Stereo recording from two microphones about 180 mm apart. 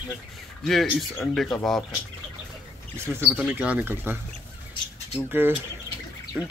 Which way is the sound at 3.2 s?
10° right (ahead or behind).